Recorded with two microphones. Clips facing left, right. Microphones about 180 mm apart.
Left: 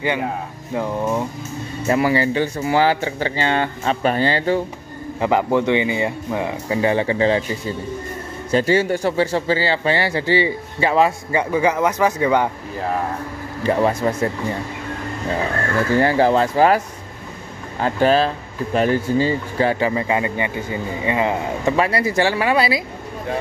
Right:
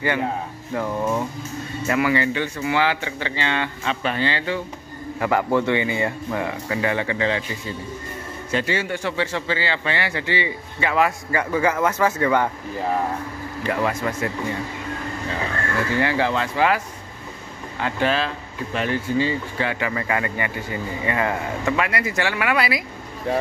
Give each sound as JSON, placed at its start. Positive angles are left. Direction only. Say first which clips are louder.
{"t": 0.0, "sound": "speech", "louder": "left 1 dB", "side_deg": 15}
{"t": 1.9, "sound": "speech", "louder": "left 3 dB", "side_deg": 35}
{"t": 5.2, "sound": "speech", "louder": "left 3 dB", "side_deg": 20}
{"t": 11.5, "sound": "speech", "louder": "left 2 dB", "side_deg": 15}
{"t": 13.7, "sound": "speech", "louder": "left 6 dB", "side_deg": 30}
{"t": 15.9, "sound": "speech", "louder": "left 7 dB", "side_deg": 40}
{"t": 19.9, "sound": "speech", "louder": "left 4 dB", "side_deg": 20}